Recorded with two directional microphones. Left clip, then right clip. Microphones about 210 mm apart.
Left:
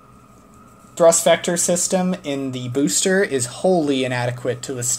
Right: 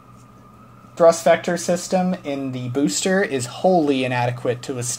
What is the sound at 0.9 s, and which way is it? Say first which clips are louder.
Speech: even; 10° left (ahead or behind).